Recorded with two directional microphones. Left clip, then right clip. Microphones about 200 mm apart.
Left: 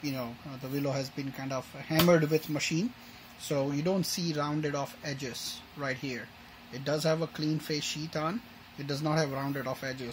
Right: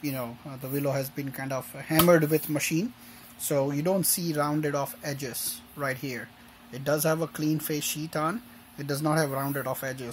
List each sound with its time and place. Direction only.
0.0 s speech: 15° right (ahead or behind)
7.3 s speech: centre (ahead or behind)
7.7 s speech: 15° right (ahead or behind)